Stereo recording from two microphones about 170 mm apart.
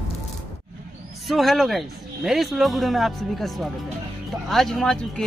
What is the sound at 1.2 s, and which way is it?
Speech, centre (ahead or behind).